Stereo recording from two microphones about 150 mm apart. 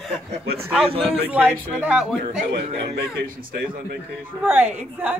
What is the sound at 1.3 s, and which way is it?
Speech, 10° right (ahead or behind).